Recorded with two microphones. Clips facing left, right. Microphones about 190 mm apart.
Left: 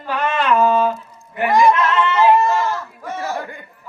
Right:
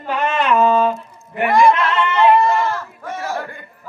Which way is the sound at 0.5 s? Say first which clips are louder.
Right 1 dB; 25° right (ahead or behind).